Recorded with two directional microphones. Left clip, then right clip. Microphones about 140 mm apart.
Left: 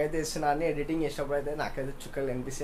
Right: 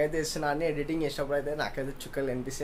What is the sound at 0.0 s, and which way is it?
Speech, 5° right (ahead or behind).